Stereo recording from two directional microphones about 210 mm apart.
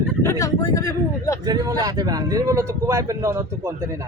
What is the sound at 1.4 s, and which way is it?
Speech, 20° right (ahead or behind).